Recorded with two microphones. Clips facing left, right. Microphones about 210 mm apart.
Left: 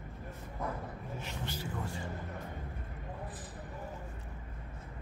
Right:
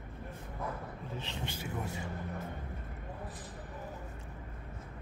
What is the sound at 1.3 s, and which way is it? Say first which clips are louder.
Speech: left 1 dB; 20° right (ahead or behind).